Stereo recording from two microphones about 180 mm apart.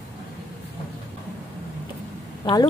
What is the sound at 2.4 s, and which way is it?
Speech, 20° left (ahead or behind).